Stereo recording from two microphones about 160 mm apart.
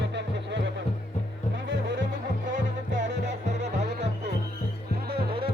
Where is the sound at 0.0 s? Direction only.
90° right.